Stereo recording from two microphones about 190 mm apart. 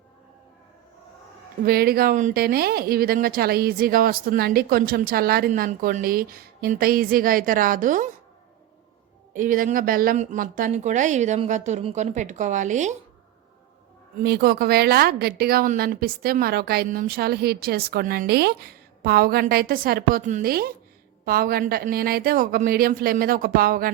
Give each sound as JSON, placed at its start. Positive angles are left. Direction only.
{"t": 1.6, "sound": "a woman's voice", "side_deg": -55}
{"t": 9.3, "sound": "speech", "side_deg": -45}
{"t": 14.2, "sound": "a woman's voice", "side_deg": -55}